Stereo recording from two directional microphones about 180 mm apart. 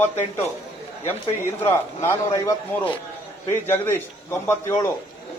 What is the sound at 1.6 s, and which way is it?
A man's voice, 15° left (ahead or behind).